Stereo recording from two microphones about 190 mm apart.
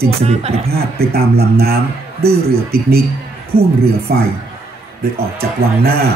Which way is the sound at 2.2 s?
55° right (ahead or behind).